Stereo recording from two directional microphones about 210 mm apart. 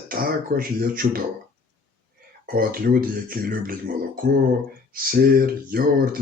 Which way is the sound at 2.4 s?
45° right (ahead or behind).